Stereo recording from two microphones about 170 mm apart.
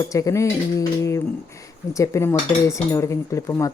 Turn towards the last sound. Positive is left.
turn(degrees=20)  # may be behind; listen again after turning